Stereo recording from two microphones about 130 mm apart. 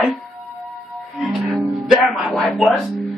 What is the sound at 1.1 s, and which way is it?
Music, centre (ahead or behind).